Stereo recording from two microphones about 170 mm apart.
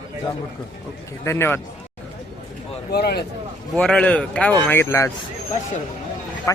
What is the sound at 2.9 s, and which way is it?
Speech, 70° left (ahead or behind).